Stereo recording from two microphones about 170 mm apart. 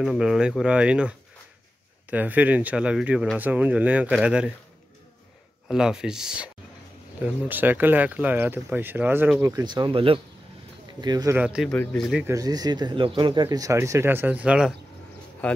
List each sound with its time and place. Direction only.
0.0 s speech: 5° right (ahead or behind)
5.7 s speech: 5° right (ahead or behind); by 11.3 s 25° right (ahead or behind)
11.3 s speech: 5° right (ahead or behind)
11.7 s speech: 10° left (ahead or behind)
12.3 s speech: 20° right (ahead or behind)